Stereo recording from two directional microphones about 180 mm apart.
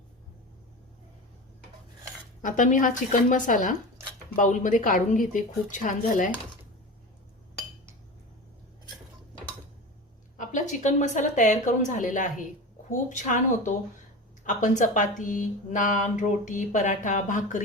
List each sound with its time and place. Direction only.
2.4 s speech: 45° left (ahead or behind)
10.3 s speech: 45° left (ahead or behind)